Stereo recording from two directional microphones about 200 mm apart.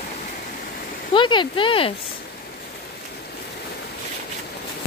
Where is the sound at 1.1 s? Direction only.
25° left (ahead or behind).